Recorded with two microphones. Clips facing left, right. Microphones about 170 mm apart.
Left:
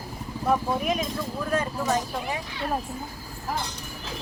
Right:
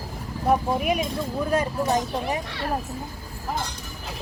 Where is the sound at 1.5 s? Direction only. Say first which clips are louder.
Right 2 dB; 35° right (ahead or behind).